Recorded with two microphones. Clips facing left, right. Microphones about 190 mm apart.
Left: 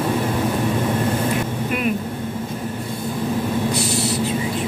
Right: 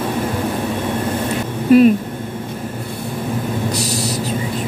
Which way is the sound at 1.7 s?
35° right (ahead or behind).